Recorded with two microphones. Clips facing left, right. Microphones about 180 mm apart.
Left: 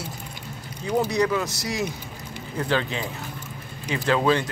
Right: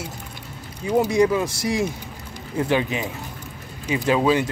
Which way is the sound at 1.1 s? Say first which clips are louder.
Right 4 dB; 25° right (ahead or behind).